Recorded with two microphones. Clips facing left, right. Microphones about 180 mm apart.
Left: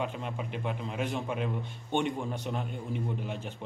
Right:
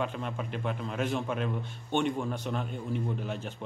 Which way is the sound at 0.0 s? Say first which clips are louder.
Right 1 dB; 15° left (ahead or behind).